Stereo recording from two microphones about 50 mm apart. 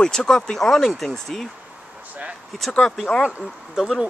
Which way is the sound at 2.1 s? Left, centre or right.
Right.